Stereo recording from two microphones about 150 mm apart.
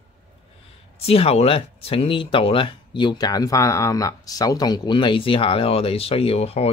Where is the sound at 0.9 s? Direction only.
40° left (ahead or behind).